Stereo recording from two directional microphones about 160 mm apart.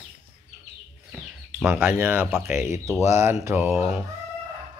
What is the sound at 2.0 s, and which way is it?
Speech, 15° right (ahead or behind).